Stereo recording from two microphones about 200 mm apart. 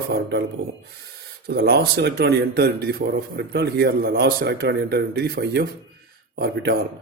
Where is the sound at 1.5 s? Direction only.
50° right (ahead or behind).